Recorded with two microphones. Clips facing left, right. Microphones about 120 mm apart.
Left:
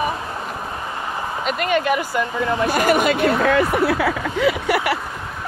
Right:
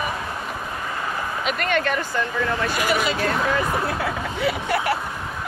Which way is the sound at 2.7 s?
50° left (ahead or behind).